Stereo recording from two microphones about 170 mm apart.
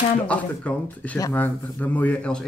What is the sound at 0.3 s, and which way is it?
A man's voice, 10° left (ahead or behind).